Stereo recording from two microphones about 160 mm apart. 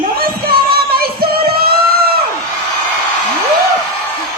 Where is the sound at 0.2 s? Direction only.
70° right (ahead or behind).